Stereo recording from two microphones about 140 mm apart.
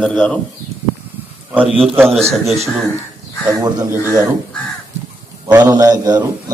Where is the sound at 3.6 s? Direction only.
20° right (ahead or behind).